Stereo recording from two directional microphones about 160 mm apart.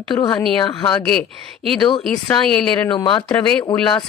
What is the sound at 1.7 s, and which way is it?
Speech, 30° left (ahead or behind).